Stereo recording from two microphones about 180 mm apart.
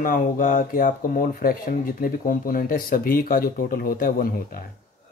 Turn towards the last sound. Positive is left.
turn(degrees=55)  # may be behind; listen again after turning